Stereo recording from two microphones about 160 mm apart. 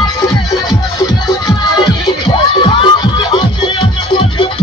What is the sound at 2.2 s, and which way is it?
Music, 30° left (ahead or behind).